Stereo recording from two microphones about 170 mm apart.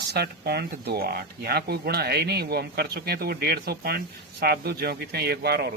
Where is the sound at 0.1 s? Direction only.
70° right (ahead or behind).